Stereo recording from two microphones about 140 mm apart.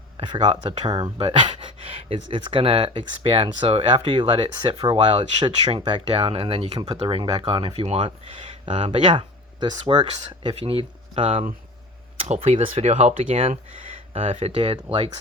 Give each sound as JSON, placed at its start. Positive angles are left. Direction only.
{"t": 0.2, "sound": "speech", "side_deg": -35}
{"t": 5.5, "sound": "speech", "side_deg": -45}